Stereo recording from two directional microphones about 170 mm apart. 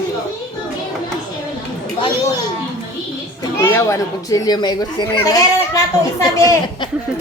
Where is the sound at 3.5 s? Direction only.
15° left (ahead or behind).